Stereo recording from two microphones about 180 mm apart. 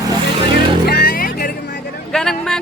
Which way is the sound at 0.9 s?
60° left (ahead or behind).